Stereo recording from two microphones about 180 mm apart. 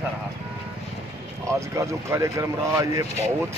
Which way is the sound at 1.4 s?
15° right (ahead or behind).